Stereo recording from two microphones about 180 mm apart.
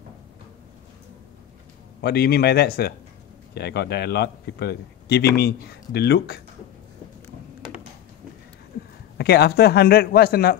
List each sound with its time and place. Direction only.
2.0 s a man's voice: 60° left (ahead or behind)
9.2 s a man's voice: 65° left (ahead or behind)